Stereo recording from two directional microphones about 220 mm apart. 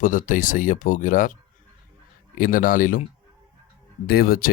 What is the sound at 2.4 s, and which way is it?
Speech, 40° left (ahead or behind).